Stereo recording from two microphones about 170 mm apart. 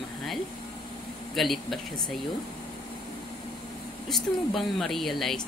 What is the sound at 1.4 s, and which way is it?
Speech, centre (ahead or behind).